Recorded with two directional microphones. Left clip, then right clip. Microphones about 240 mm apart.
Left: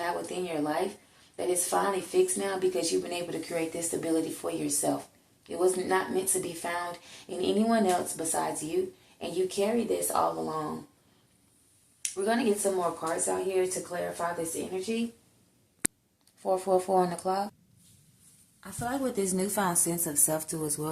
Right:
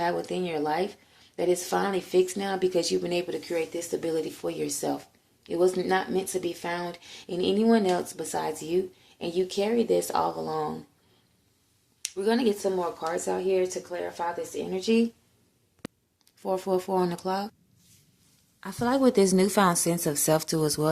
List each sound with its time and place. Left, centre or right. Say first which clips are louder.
0.0 s speech: right 4 dB; right
12.0 s speech: right 2 dB; right
16.4 s speech: left 1 dB; right
18.6 s speech: right 8 dB; right